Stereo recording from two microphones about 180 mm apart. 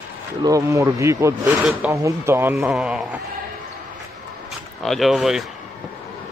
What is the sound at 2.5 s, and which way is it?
Speech, 5° right (ahead or behind).